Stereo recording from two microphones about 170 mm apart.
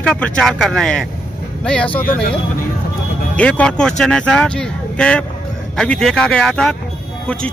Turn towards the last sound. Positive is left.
turn(degrees=5)  # may be behind; listen again after turning